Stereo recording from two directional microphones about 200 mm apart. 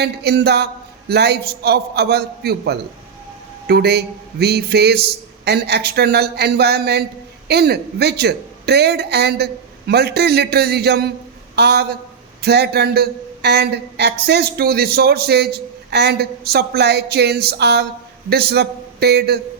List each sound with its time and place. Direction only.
0.0 s a man's voice: 55° right (ahead or behind)